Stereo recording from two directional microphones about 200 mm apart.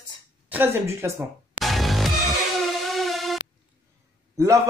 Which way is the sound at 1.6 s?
Centre (ahead or behind).